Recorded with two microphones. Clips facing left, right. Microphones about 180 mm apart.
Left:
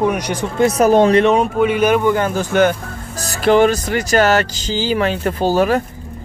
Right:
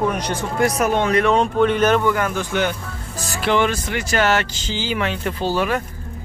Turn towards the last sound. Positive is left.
turn(degrees=40)  # may be behind; listen again after turning